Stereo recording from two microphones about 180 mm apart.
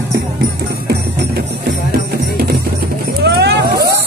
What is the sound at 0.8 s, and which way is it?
Music, 65° right (ahead or behind).